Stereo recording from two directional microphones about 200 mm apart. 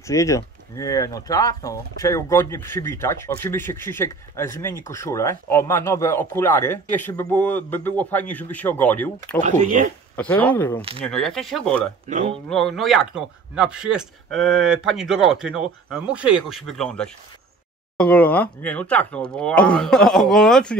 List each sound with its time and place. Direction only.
0.0 s speech: 15° left (ahead or behind)
9.4 s speech: 40° right (ahead or behind)
10.4 s speech: 10° left (ahead or behind)
10.8 s speech: 30° right (ahead or behind)
11.1 s speech: centre (ahead or behind)
12.1 s speech: 40° right (ahead or behind)
12.4 s speech: 5° left (ahead or behind)